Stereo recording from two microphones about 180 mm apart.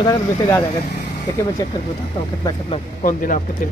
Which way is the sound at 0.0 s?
20° left (ahead or behind).